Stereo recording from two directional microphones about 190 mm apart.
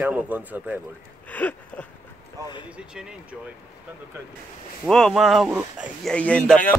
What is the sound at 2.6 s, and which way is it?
Speech, 5° right (ahead or behind).